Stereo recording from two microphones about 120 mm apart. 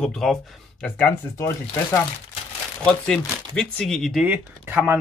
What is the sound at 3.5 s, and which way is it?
Speech, 5° left (ahead or behind).